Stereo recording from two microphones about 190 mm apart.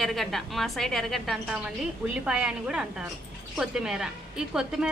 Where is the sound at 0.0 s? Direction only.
Centre (ahead or behind).